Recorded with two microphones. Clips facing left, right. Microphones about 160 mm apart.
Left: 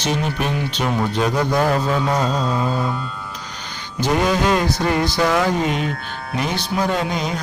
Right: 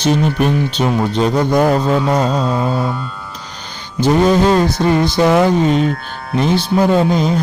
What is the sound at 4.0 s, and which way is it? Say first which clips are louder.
Speech: right 7 dB; 30° right (ahead or behind).